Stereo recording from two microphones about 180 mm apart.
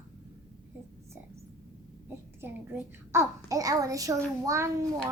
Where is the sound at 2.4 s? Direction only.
15° right (ahead or behind).